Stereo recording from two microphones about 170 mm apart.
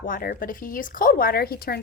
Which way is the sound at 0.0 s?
55° left (ahead or behind).